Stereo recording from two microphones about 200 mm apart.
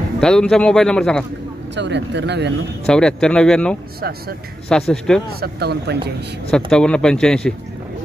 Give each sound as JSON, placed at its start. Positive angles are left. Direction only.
{"t": 0.2, "sound": "speech", "side_deg": 5}
{"t": 1.8, "sound": "speech", "side_deg": -60}
{"t": 2.9, "sound": "speech", "side_deg": 5}
{"t": 5.4, "sound": "speech", "side_deg": -55}
{"t": 6.5, "sound": "speech", "side_deg": 5}